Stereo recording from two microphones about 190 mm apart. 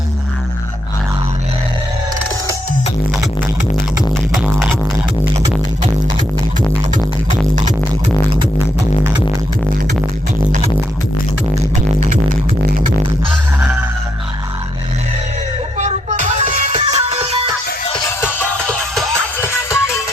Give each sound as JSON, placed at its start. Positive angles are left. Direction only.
{"t": 4.4, "sound": "music", "side_deg": 0}
{"t": 6.9, "sound": "music", "side_deg": -40}
{"t": 11.9, "sound": "music", "side_deg": -45}
{"t": 15.8, "sound": "music", "side_deg": -40}
{"t": 16.7, "sound": "music", "side_deg": -30}
{"t": 18.2, "sound": "music", "side_deg": 10}